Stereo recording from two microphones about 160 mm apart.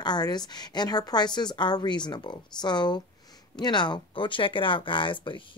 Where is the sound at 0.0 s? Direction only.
25° left (ahead or behind).